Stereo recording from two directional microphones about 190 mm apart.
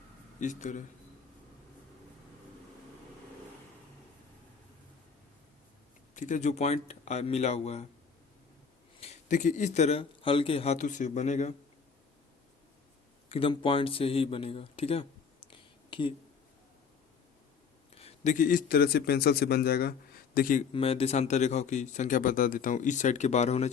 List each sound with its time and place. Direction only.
0.3 s a man's voice: 40° left (ahead or behind)
6.1 s speech: 40° left (ahead or behind)
9.0 s speech: 40° left (ahead or behind)
13.2 s a man's voice: 30° left (ahead or behind)
15.4 s whispering: 25° left (ahead or behind)
17.9 s a man's voice: 35° left (ahead or behind)
20.7 s speech: 30° left (ahead or behind)